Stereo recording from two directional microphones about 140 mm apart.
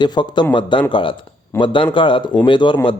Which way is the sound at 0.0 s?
30° left (ahead or behind).